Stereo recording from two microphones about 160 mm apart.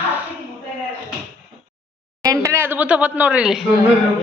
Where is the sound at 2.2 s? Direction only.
20° right (ahead or behind); by 3.7 s 5° right (ahead or behind).